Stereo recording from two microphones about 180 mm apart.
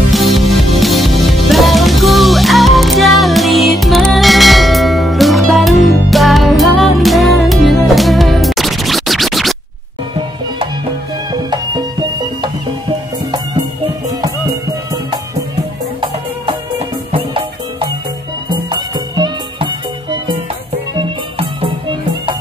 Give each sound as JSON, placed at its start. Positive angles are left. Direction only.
{"t": 0.1, "sound": "music", "side_deg": 0}
{"t": 11.5, "sound": "music", "side_deg": -25}
{"t": 17.1, "sound": "music", "side_deg": -30}